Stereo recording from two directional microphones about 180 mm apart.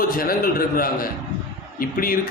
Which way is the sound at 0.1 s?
55° left (ahead or behind).